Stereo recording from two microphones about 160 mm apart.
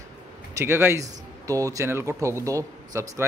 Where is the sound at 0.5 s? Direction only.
15° right (ahead or behind).